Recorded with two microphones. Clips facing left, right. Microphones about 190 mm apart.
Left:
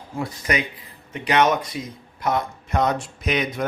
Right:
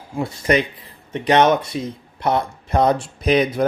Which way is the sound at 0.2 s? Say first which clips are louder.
Right 6 dB; 30° right (ahead or behind).